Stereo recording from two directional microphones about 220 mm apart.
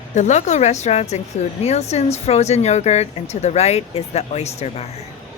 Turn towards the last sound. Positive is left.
turn(degrees=30)  # may be behind; listen again after turning